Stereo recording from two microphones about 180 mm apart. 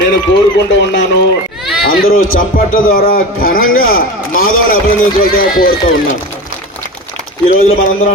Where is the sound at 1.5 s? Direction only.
Centre (ahead or behind).